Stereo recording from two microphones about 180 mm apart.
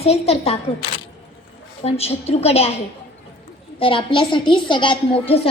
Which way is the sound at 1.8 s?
35° left (ahead or behind).